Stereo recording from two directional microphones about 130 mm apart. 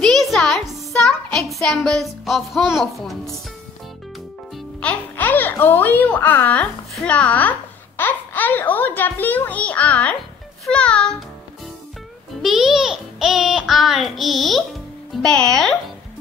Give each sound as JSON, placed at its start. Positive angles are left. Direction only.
{"t": 0.0, "sound": "a sound", "side_deg": 0}
{"t": 1.5, "sound": "a child's voice", "side_deg": 0}
{"t": 4.8, "sound": "a child's voice", "side_deg": 15}
{"t": 12.4, "sound": "a child's voice", "side_deg": 0}